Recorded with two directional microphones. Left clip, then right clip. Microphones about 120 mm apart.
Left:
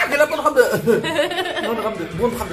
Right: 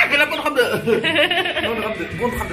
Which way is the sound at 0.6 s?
5° left (ahead or behind).